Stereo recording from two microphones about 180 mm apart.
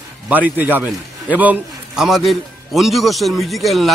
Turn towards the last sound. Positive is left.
turn(degrees=0)  # may be behind; listen again after turning